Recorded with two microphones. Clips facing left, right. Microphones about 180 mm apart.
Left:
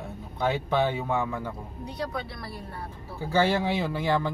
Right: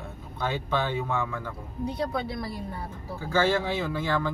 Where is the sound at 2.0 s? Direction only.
20° right (ahead or behind).